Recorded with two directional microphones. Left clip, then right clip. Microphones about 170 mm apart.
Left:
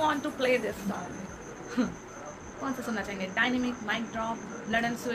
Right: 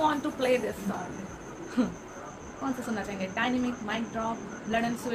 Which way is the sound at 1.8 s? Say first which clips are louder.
Right 2 dB; centre (ahead or behind).